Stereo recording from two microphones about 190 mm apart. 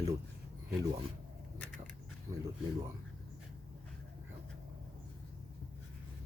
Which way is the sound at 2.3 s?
20° right (ahead or behind).